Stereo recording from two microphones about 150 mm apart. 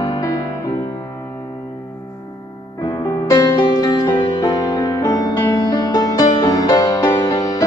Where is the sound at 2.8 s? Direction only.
25° left (ahead or behind).